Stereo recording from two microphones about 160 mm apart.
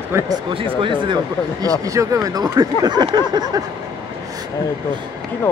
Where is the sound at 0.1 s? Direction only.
15° right (ahead or behind).